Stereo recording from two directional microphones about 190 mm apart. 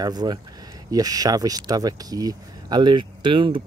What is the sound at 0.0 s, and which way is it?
Speech, 20° right (ahead or behind).